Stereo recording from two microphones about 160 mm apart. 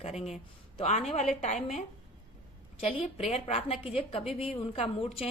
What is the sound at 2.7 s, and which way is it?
A woman's voice, 35° left (ahead or behind).